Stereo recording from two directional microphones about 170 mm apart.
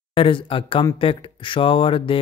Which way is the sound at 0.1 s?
30° left (ahead or behind).